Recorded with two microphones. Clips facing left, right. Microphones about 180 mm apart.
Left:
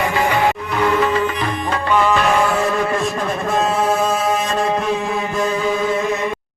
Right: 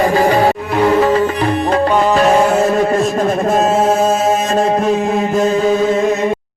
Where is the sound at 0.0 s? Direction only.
35° right (ahead or behind).